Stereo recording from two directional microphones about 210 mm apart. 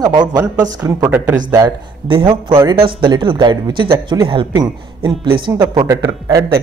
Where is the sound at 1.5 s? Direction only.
20° right (ahead or behind).